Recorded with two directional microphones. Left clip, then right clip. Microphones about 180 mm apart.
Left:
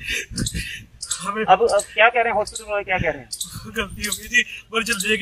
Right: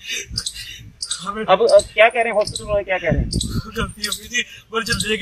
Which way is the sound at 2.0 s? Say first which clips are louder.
Right 2 dB; 50° right (ahead or behind).